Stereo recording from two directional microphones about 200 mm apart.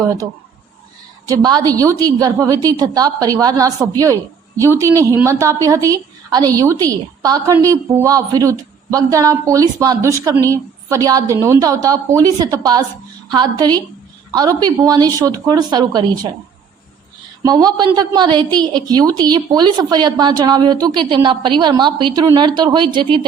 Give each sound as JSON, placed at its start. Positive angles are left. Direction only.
{"t": 0.0, "sound": "a woman's voice", "side_deg": -15}
{"t": 1.3, "sound": "a woman's voice", "side_deg": -20}
{"t": 17.4, "sound": "a woman's voice", "side_deg": -20}